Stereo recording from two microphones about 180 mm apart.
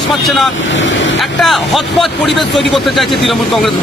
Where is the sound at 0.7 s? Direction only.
90° left.